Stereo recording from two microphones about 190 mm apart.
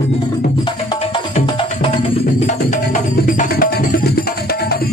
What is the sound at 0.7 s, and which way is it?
Music, 25° left (ahead or behind).